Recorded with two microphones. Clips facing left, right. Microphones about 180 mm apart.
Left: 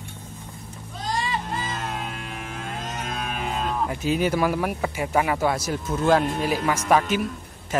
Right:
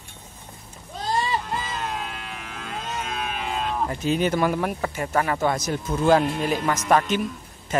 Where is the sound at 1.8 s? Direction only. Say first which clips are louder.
Even; 45° left (ahead or behind).